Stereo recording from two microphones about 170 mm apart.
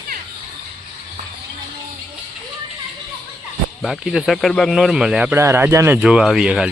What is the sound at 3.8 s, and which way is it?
Speech, centre (ahead or behind).